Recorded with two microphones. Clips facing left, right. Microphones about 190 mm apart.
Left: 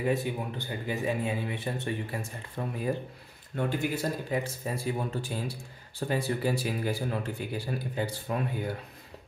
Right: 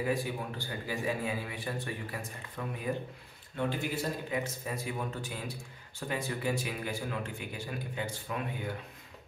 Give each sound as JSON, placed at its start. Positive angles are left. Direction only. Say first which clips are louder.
{"t": 0.0, "sound": "a man's voice", "louder": "left 3 dB", "side_deg": 25}
{"t": 2.9, "sound": "a man's voice", "louder": "left 3 dB", "side_deg": 40}